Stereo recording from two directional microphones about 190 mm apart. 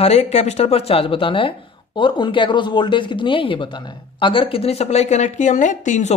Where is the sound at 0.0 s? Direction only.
35° left (ahead or behind).